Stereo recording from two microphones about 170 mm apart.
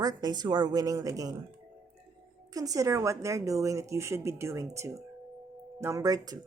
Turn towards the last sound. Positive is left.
turn(degrees=-20)  # may be behind; listen again after turning